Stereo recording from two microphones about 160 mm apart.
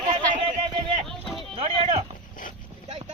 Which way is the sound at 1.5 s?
35° right (ahead or behind).